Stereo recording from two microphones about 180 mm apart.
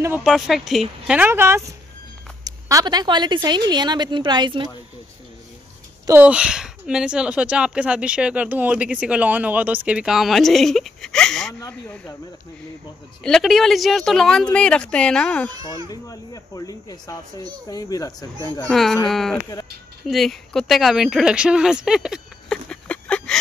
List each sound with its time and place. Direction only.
0.2 s speech: centre (ahead or behind); by 4.6 s 25° right (ahead or behind)
6.0 s speech: 10° right (ahead or behind)
13.2 s speech: centre (ahead or behind)
15.9 s speech: 20° left (ahead or behind)
18.7 s speech: centre (ahead or behind)